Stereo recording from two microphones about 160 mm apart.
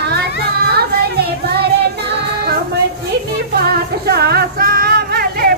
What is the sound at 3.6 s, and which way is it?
Music, 80° right.